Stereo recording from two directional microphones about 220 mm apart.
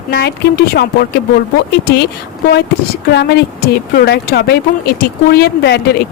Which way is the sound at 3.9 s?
45° left (ahead or behind).